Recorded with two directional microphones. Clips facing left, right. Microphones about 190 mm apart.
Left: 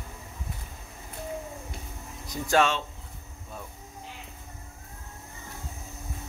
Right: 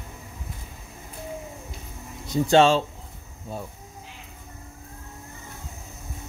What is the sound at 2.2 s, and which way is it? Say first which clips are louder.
Speech: right 7 dB; 25° right (ahead or behind).